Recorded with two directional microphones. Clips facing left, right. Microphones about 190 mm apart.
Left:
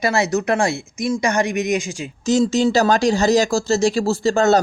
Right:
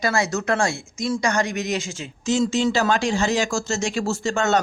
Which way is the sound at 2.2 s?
40° left (ahead or behind).